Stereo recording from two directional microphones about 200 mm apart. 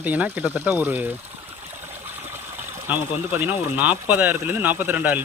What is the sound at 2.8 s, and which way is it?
Speech, 10° right (ahead or behind).